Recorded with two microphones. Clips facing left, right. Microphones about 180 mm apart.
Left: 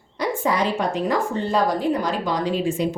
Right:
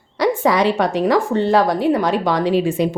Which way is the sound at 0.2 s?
80° right.